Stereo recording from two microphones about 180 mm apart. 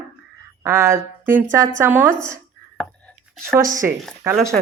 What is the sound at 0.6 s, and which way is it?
Speech, 15° right (ahead or behind).